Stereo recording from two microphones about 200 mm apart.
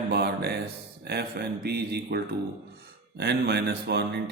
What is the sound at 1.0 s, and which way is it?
Speech, 55° right (ahead or behind).